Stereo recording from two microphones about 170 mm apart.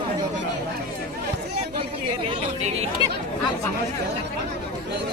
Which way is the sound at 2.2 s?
35° right (ahead or behind).